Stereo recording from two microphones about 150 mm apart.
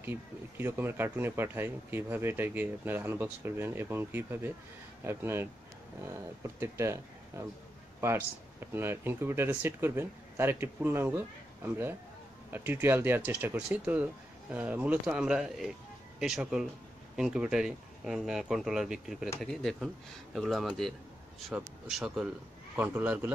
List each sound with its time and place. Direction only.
0.0 s speech: 15° right (ahead or behind)